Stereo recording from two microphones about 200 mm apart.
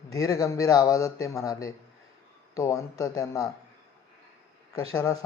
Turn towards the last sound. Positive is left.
turn(degrees=15)  # may be behind; listen again after turning